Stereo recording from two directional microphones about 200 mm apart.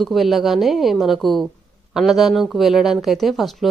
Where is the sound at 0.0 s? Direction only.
Centre (ahead or behind).